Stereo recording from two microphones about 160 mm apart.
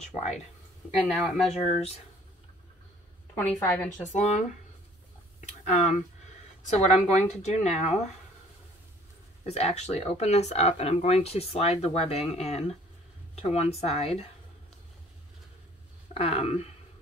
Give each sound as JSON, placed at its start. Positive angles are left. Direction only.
{"t": 0.0, "sound": "speech", "side_deg": 45}
{"t": 1.0, "sound": "speech", "side_deg": 0}
{"t": 3.3, "sound": "a woman's voice", "side_deg": 10}
{"t": 4.1, "sound": "speech", "side_deg": 45}
{"t": 5.4, "sound": "a sound", "side_deg": 45}
{"t": 6.8, "sound": "speech", "side_deg": 45}
{"t": 9.5, "sound": "speech", "side_deg": 45}
{"t": 16.1, "sound": "speech", "side_deg": 35}